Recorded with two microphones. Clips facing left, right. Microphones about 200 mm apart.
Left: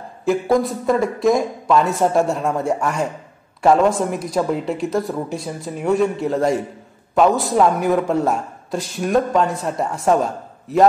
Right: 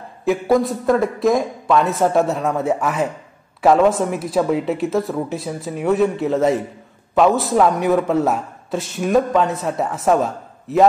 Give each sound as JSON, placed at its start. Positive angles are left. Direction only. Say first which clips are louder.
{"t": 0.2, "sound": "a man's voice", "louder": "right 1 dB", "side_deg": 0}